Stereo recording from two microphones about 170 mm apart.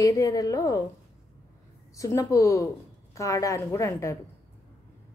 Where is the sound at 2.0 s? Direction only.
15° left (ahead or behind).